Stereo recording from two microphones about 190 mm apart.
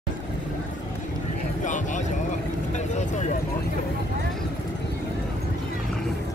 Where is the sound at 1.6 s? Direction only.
40° left (ahead or behind).